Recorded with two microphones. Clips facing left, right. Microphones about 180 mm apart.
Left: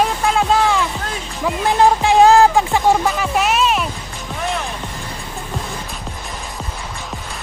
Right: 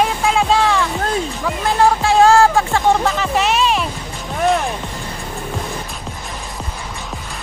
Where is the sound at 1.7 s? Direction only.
15° left (ahead or behind).